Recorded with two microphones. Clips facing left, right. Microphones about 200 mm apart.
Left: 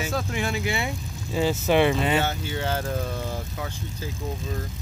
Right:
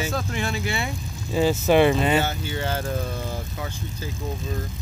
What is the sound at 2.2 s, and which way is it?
Speech, centre (ahead or behind).